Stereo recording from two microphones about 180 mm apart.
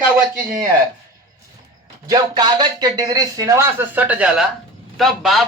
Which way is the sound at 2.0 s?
20° right (ahead or behind).